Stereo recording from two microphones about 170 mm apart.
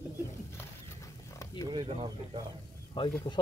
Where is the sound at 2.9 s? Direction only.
25° left (ahead or behind).